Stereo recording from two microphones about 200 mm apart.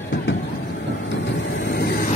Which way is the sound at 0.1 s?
60° left (ahead or behind).